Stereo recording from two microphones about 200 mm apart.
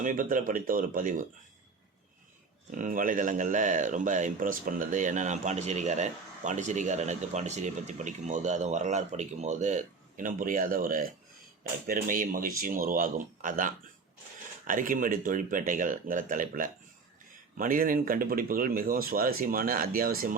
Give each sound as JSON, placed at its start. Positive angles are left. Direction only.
{"t": 0.0, "sound": "speech", "side_deg": -40}
{"t": 2.7, "sound": "speech", "side_deg": -45}